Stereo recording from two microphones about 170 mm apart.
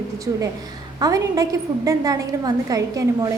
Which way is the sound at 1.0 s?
20° right (ahead or behind).